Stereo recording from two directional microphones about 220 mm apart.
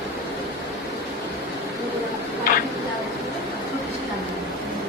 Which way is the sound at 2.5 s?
40° left (ahead or behind).